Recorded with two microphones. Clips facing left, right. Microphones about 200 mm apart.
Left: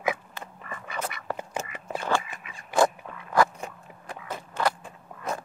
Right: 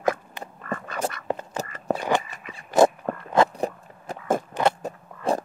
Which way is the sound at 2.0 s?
20° right (ahead or behind).